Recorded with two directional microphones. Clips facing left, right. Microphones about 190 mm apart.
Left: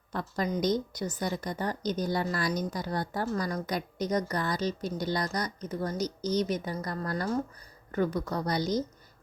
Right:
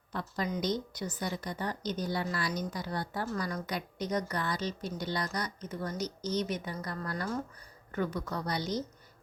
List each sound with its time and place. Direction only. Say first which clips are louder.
0.1 s speech: left 3 dB; 45° left (ahead or behind)